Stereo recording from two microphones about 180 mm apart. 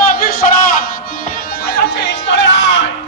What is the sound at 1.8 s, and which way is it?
Chatter, 75° left (ahead or behind).